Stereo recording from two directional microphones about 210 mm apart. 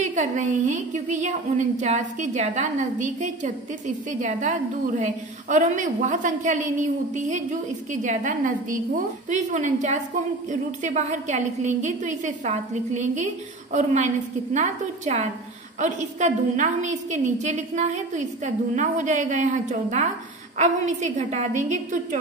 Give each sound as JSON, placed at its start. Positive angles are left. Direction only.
{"t": 0.0, "sound": "a woman's voice", "side_deg": -35}